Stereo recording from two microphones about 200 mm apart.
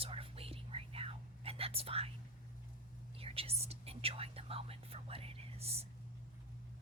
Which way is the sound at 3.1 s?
30° right (ahead or behind).